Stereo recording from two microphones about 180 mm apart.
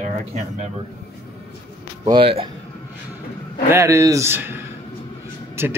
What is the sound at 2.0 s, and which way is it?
Speech, 30° right (ahead or behind).